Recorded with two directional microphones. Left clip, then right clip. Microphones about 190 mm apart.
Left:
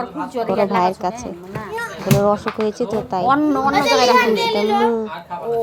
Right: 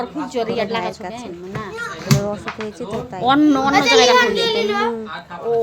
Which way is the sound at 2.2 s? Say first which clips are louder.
Left 8 dB; 20° left (ahead or behind).